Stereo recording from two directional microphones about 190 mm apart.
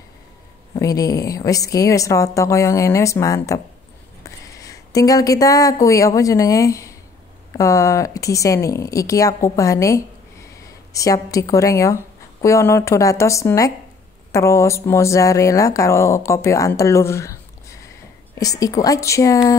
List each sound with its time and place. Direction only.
0.7 s speech: 20° left (ahead or behind)